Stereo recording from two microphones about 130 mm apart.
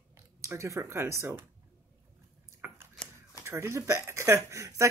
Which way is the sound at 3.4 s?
20° right (ahead or behind).